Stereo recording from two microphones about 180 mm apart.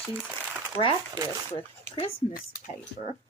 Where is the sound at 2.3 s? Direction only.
55° left (ahead or behind).